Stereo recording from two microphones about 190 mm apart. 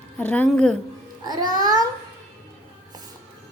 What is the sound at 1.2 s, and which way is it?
Music, 20° right (ahead or behind).